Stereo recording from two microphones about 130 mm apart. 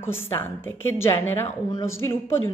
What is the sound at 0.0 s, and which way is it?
Speech, 20° left (ahead or behind).